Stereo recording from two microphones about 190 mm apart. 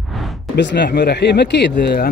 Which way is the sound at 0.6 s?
60° left (ahead or behind).